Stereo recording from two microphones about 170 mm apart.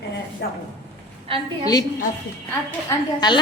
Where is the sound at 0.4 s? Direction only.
70° left (ahead or behind).